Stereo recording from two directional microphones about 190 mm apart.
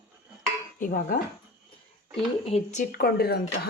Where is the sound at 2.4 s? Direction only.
35° left (ahead or behind); by 3.4 s 55° left (ahead or behind).